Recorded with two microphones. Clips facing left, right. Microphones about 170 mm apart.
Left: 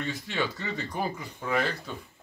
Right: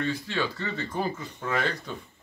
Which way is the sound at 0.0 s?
20° left (ahead or behind).